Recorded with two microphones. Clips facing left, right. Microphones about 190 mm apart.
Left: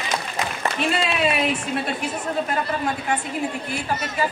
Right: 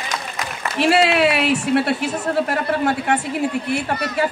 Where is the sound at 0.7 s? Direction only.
75° right (ahead or behind).